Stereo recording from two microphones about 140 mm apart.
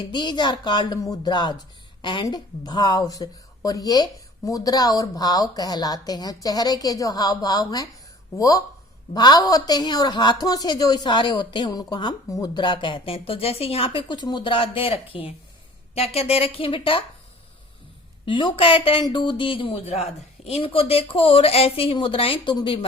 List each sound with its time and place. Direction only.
0.0 s a woman's voice: 35° left (ahead or behind)
18.3 s a woman's voice: 35° left (ahead or behind)